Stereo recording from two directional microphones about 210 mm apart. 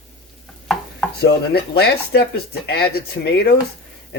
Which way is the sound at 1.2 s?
50° left (ahead or behind).